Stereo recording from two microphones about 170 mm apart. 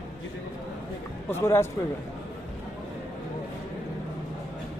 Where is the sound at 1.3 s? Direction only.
15° left (ahead or behind).